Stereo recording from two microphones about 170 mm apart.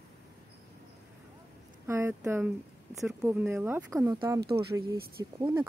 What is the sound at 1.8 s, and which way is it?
Speech, 15° right (ahead or behind).